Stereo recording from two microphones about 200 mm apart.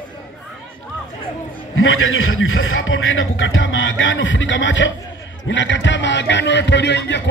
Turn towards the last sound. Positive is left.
turn(degrees=60)  # may be behind; listen again after turning